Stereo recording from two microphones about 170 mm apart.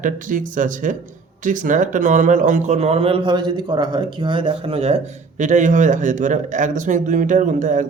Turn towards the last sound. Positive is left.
turn(degrees=-50)  # may be behind; listen again after turning